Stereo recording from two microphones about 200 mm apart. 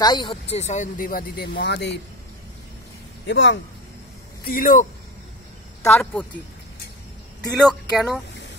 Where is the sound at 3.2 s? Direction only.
65° left (ahead or behind).